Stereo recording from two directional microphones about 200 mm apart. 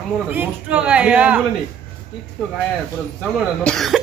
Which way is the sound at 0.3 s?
10° right (ahead or behind).